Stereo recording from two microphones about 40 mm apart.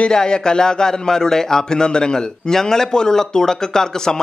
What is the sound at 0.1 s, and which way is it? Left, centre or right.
A man's voice, centre.